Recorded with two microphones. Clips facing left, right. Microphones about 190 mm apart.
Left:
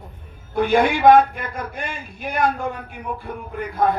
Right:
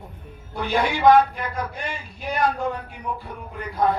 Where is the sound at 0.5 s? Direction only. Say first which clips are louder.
Left 6 dB; 50° left (ahead or behind).